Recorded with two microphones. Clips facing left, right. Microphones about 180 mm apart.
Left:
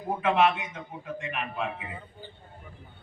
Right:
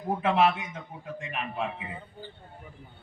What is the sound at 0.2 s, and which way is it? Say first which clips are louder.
Speech: left 1 dB; 35° right (ahead or behind).